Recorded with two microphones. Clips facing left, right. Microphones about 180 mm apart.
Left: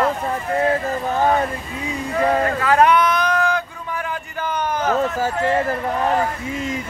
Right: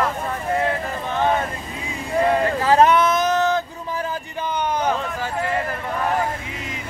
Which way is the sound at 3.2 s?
25° right (ahead or behind).